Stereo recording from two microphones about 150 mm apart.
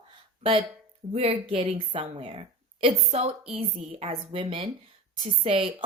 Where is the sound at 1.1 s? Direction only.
40° right (ahead or behind).